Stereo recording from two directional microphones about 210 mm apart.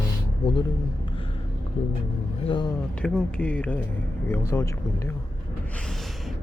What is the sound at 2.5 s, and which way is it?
Speech, 20° left (ahead or behind).